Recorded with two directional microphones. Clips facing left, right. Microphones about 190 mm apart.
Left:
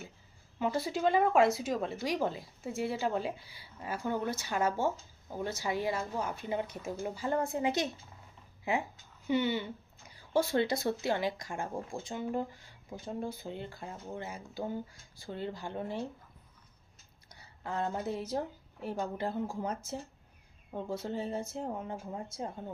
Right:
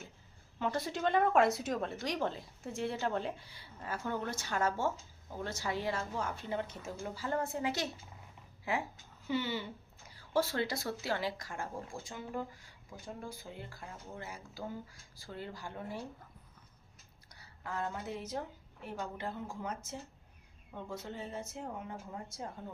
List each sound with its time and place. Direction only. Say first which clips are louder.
0.6 s a woman's voice: left 4 dB; 5° left (ahead or behind); by 16.0 s 25° left (ahead or behind)
17.2 s a woman's voice: left 4 dB; 20° left (ahead or behind)
20.7 s speech: left 7 dB; 30° left (ahead or behind)